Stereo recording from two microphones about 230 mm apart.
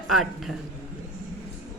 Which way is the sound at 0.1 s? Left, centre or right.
Centre.